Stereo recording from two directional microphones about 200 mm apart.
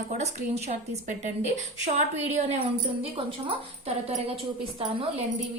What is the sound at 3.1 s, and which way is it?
Speech, 30° right (ahead or behind).